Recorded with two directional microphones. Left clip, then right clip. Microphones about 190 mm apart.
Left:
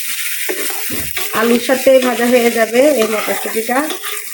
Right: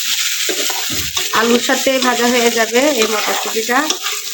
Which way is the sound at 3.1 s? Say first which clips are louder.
Right 1 dB; centre (ahead or behind).